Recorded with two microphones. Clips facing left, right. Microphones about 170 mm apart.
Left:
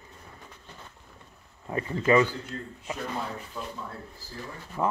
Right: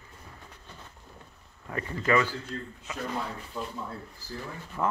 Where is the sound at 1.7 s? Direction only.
20° left (ahead or behind).